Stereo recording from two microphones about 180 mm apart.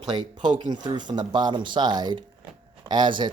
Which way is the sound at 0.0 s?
25° right (ahead or behind).